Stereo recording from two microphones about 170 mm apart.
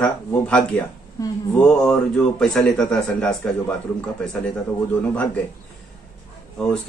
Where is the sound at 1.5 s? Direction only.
5° left (ahead or behind).